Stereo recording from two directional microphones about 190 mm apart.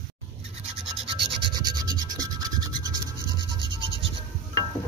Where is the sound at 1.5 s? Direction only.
20° right (ahead or behind).